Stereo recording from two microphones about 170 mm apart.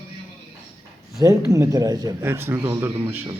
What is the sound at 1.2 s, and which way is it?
Speech, 20° right (ahead or behind).